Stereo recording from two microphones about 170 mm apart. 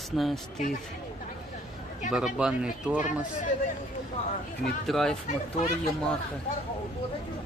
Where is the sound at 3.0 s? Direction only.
50° left (ahead or behind).